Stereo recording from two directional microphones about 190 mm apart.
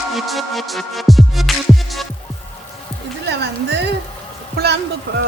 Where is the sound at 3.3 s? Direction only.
60° right (ahead or behind).